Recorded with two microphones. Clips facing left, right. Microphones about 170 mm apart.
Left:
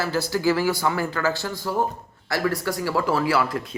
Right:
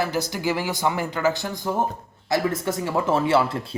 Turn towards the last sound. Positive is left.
turn(degrees=-25)  # may be behind; listen again after turning